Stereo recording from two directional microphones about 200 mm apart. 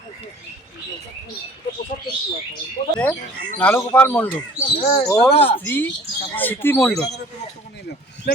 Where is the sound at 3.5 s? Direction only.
10° left (ahead or behind).